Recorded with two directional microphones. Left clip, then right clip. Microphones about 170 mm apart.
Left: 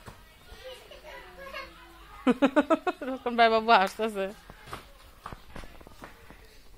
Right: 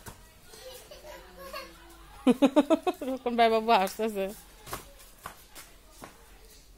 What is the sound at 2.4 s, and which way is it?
Speech, 25° right (ahead or behind).